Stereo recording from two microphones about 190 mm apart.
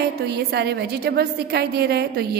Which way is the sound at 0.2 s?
55° right (ahead or behind).